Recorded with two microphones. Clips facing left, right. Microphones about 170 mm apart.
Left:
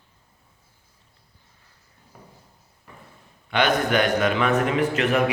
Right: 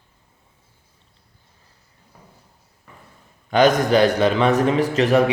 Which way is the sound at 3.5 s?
40° right (ahead or behind).